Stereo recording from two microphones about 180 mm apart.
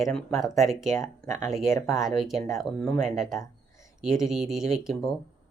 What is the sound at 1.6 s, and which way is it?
Speech, 15° left (ahead or behind).